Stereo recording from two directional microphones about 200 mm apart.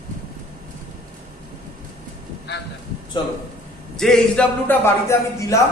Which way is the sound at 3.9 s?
5° left (ahead or behind).